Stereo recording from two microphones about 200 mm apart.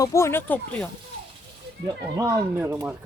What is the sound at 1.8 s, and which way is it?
Speech, 20° right (ahead or behind).